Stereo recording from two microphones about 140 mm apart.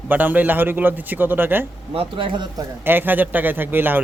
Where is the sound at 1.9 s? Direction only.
40° right (ahead or behind).